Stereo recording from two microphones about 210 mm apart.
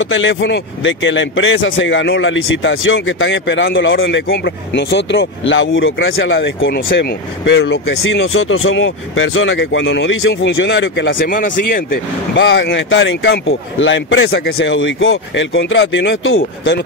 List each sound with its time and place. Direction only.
0.0 s speech: 65° left (ahead or behind)
11.2 s speech: 40° left (ahead or behind)
12.4 s speech: 55° left (ahead or behind)